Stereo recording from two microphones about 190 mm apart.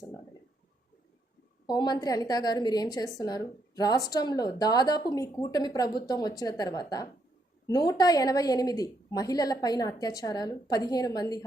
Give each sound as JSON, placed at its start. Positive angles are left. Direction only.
{"t": 1.6, "sound": "a woman's voice", "side_deg": 20}